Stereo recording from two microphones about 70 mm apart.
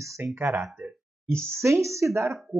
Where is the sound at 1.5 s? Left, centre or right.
Right.